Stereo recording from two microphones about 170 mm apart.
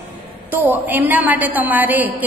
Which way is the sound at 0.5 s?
10° right (ahead or behind).